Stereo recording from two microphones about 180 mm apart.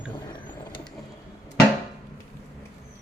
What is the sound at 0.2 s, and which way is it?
Vehicle, 25° left (ahead or behind).